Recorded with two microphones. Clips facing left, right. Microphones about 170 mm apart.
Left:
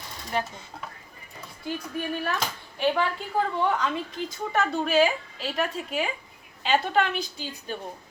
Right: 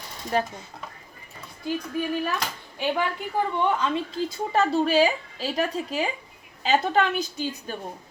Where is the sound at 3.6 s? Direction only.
25° right (ahead or behind).